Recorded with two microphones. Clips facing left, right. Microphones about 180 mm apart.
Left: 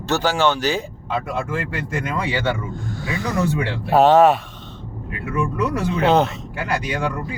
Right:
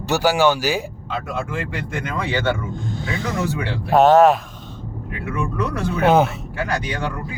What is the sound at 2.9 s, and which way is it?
Snake, 25° right (ahead or behind).